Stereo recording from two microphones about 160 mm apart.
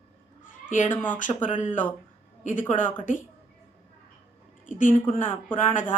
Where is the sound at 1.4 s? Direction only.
50° left (ahead or behind).